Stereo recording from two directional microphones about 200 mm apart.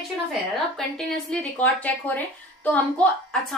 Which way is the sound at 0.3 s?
Centre (ahead or behind).